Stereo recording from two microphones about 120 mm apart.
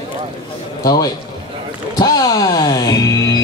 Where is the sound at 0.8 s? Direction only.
30° left (ahead or behind).